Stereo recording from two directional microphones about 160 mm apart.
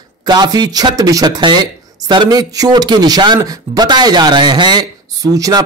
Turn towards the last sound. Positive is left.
turn(degrees=-20)  # may be behind; listen again after turning